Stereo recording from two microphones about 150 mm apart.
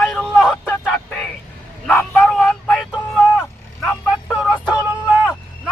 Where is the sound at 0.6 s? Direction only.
10° left (ahead or behind).